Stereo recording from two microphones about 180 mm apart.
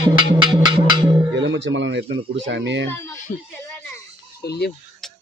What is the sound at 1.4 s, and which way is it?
Speech, 90° right.